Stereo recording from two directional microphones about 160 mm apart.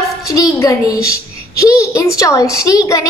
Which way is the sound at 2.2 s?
20° left (ahead or behind).